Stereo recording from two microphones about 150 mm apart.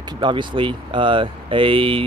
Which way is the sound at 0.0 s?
30° right (ahead or behind).